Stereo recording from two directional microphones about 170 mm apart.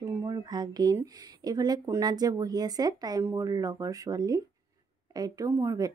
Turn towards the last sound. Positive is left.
turn(degrees=-20)  # may be behind; listen again after turning